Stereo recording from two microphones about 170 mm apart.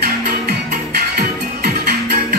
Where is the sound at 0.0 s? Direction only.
65° right (ahead or behind).